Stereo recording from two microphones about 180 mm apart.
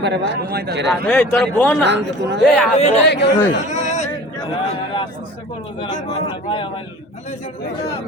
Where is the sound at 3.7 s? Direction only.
40° left (ahead or behind).